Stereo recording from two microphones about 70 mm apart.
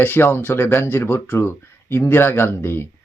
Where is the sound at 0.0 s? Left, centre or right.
Left.